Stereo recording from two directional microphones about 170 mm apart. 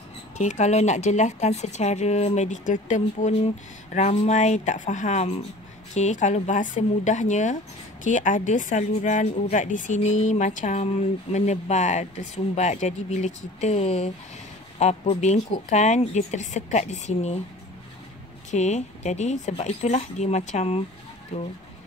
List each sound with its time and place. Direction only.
0.4 s a woman's voice: 45° left (ahead or behind)
18.5 s a woman's voice: 45° left (ahead or behind)